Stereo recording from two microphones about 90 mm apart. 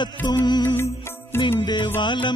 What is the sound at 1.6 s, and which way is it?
Music, 55° left (ahead or behind).